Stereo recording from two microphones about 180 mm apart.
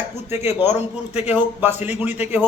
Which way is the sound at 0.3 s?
15° right (ahead or behind).